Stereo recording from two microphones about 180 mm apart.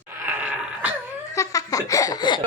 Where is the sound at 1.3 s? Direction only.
20° left (ahead or behind).